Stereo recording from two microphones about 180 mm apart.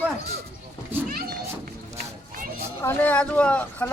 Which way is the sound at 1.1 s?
60° right (ahead or behind).